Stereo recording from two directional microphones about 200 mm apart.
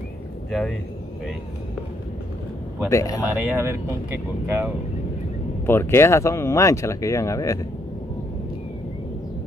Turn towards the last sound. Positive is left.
turn(degrees=15)  # may be behind; listen again after turning